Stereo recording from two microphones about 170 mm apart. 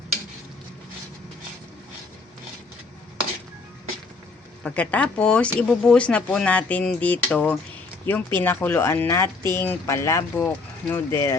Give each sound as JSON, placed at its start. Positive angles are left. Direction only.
{"t": 4.6, "sound": "speech", "side_deg": 10}